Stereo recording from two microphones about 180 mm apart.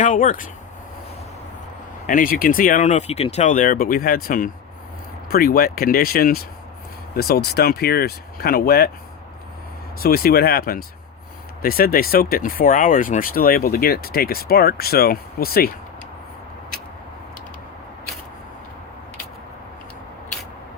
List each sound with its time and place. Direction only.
0.0 s speech: 45° left (ahead or behind)
2.0 s speech: 50° left (ahead or behind)
10.0 s speech: 55° left (ahead or behind)